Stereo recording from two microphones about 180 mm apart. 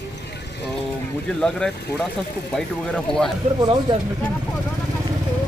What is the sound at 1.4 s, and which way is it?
Speech, 5° left (ahead or behind).